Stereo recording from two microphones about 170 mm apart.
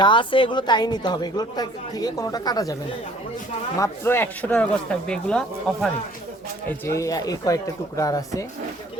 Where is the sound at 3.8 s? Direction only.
15° left (ahead or behind).